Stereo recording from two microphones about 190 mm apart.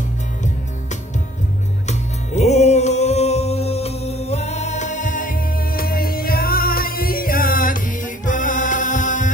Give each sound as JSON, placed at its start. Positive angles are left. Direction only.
{"t": 1.9, "sound": "music", "side_deg": 35}